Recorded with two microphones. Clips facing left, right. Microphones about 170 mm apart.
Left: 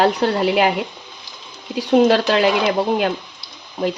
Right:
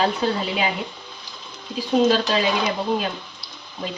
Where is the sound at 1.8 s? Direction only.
70° left (ahead or behind).